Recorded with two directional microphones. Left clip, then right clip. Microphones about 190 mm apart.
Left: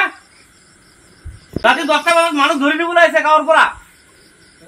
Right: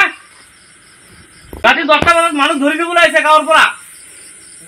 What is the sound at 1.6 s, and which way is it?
A man's voice, 35° right (ahead or behind).